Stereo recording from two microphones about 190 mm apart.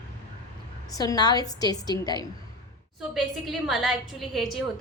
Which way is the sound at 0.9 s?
20° left (ahead or behind).